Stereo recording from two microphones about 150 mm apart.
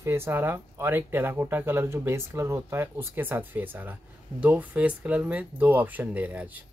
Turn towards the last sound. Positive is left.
turn(degrees=-10)  # may be behind; listen again after turning